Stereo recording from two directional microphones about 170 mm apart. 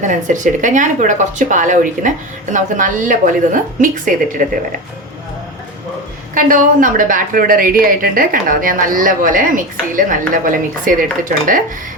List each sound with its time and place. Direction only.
0.0 s a woman's voice: 45° right (ahead or behind)
6.3 s a woman's voice: 50° right (ahead or behind)